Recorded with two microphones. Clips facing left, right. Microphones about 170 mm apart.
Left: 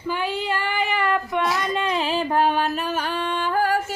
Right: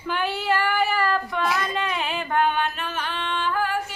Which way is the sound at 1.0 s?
20° left (ahead or behind).